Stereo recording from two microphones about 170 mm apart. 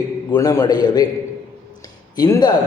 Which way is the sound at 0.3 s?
20° left (ahead or behind).